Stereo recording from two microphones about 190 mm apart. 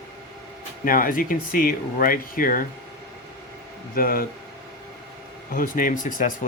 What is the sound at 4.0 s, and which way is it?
Speech, 50° left (ahead or behind).